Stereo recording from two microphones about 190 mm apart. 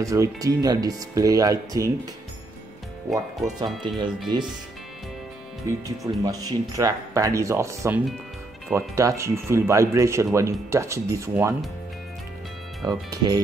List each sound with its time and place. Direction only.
0.0 s speech: 15° right (ahead or behind)
3.1 s speech: centre (ahead or behind)
3.5 s speech: 25° right (ahead or behind)
6.2 s speech: 20° right (ahead or behind)
12.8 s speech: 20° right (ahead or behind)